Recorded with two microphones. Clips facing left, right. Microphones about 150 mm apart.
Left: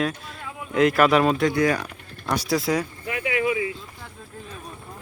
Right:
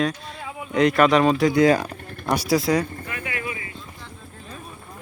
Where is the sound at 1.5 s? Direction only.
25° right (ahead or behind).